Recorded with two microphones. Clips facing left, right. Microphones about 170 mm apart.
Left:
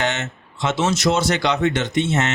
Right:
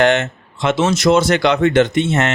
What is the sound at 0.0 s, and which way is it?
A man's voice, 55° right (ahead or behind).